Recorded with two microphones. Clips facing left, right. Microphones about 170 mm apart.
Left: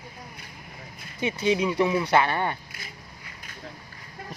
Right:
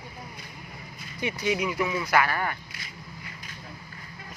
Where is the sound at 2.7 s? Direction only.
50° left (ahead or behind).